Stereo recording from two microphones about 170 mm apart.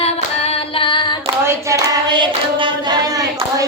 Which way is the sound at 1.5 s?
20° right (ahead or behind).